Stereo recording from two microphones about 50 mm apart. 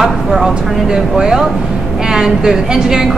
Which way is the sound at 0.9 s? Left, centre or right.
Centre.